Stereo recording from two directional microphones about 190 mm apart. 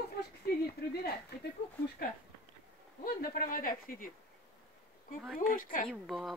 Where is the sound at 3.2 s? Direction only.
50° left (ahead or behind).